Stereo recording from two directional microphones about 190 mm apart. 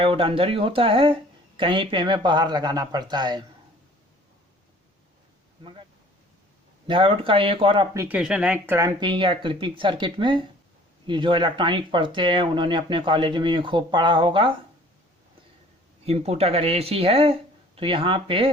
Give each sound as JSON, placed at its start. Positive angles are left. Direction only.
{"t": 0.0, "sound": "speech", "side_deg": -30}
{"t": 6.8, "sound": "speech", "side_deg": -25}
{"t": 7.9, "sound": "speech", "side_deg": -10}
{"t": 16.0, "sound": "speech", "side_deg": -35}